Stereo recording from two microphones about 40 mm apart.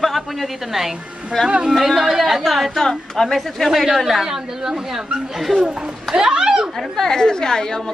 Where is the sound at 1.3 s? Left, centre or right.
Centre.